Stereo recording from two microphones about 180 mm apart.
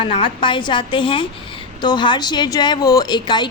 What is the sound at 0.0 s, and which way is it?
Speech, 30° left (ahead or behind).